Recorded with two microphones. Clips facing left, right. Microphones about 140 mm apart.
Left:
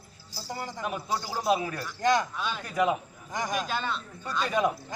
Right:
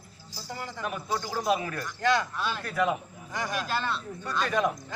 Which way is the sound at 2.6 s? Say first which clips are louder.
Left 2 dB; 15° left (ahead or behind).